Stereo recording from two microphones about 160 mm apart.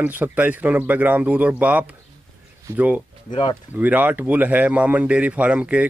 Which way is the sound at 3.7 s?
10° right (ahead or behind).